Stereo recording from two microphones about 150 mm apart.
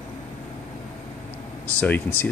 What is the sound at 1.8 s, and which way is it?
Speech, 10° left (ahead or behind).